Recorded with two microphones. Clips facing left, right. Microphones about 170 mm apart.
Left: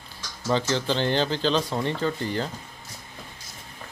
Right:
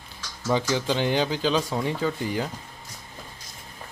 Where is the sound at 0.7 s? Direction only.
10° right (ahead or behind).